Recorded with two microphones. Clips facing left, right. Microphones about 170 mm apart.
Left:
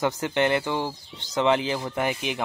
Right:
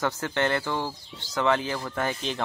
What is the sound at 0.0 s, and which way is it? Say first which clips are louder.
Speech: left 3 dB; 15° left (ahead or behind).